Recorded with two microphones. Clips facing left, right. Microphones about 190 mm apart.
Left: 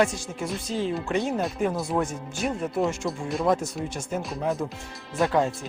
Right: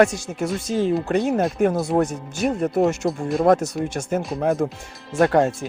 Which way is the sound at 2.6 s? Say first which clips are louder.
Right 7 dB; 65° right (ahead or behind).